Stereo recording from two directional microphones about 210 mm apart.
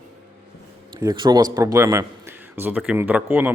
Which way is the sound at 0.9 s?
20° right (ahead or behind).